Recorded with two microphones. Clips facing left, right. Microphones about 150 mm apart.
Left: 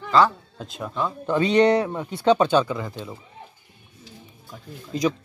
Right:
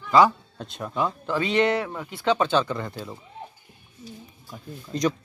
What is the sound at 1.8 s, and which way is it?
Speech, 20° left (ahead or behind).